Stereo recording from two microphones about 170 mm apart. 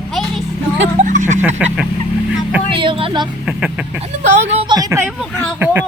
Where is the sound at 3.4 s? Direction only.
5° right (ahead or behind).